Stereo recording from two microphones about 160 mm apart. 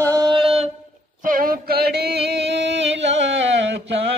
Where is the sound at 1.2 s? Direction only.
65° right (ahead or behind); by 3.7 s 90° right.